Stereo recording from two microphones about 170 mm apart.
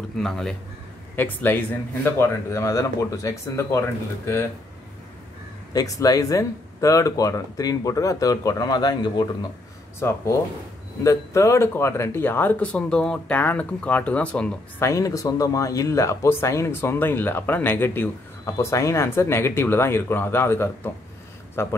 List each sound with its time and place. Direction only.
0.2 s a man's voice: 5° left (ahead or behind)
5.7 s speech: 20° left (ahead or behind)